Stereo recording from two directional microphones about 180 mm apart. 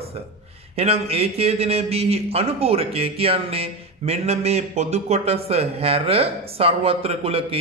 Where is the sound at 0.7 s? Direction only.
35° right (ahead or behind).